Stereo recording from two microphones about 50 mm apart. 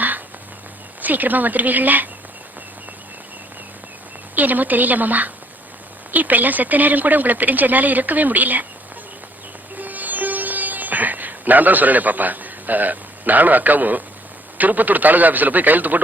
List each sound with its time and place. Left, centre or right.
1.0 s speech: right
4.4 s speech: right
9.7 s sitar: right
14.6 s speech: right